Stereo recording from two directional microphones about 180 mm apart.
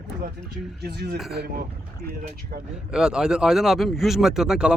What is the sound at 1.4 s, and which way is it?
Speech, 60° right (ahead or behind).